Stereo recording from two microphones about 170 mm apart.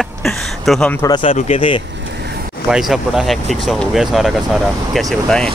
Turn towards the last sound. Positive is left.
turn(degrees=5)  # may be behind; listen again after turning